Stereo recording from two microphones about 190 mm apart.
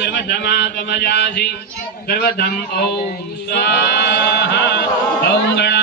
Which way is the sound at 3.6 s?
65° left (ahead or behind).